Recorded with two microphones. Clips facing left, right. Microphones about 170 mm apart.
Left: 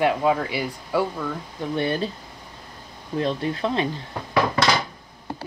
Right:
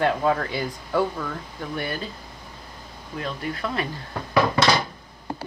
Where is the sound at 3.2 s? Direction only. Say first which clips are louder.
Left 5 dB; 30° left (ahead or behind).